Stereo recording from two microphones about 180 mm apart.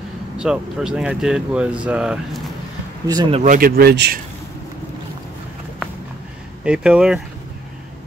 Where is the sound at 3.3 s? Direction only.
45° right (ahead or behind); by 4.2 s 65° right (ahead or behind).